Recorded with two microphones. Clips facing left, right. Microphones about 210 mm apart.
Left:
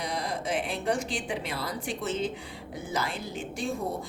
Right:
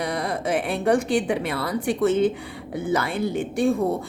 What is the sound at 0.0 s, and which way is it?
A woman's voice, 60° right (ahead or behind).